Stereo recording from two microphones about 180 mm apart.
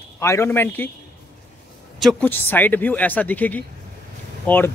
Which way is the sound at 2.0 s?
5° left (ahead or behind).